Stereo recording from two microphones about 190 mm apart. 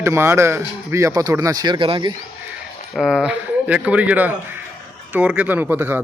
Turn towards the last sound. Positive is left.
turn(degrees=-10)  # may be behind; listen again after turning